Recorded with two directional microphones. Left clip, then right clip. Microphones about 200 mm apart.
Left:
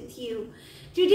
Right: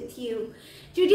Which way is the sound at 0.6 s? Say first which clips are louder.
Right 1 dB; 20° right (ahead or behind).